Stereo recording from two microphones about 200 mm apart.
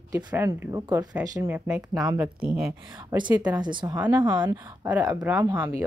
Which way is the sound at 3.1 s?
20° right (ahead or behind).